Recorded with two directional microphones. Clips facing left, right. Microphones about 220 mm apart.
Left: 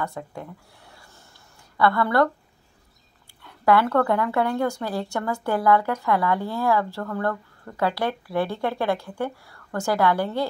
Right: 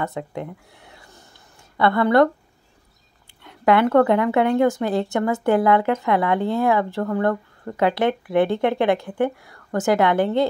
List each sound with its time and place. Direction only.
0.0 s speech: 20° right (ahead or behind)
3.4 s speech: 20° right (ahead or behind)